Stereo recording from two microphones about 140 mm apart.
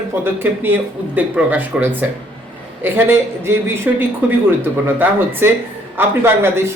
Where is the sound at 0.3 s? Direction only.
15° right (ahead or behind).